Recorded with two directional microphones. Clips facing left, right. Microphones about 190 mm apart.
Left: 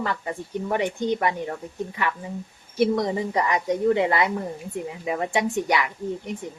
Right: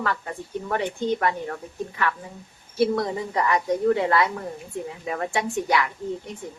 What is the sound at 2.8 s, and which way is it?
A woman's voice, 20° left (ahead or behind).